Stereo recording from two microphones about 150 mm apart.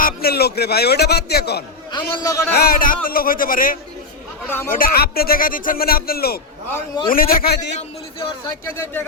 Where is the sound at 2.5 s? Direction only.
90° left; by 3.8 s 70° left (ahead or behind).